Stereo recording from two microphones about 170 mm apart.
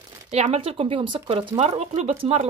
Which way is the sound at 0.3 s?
40° right (ahead or behind).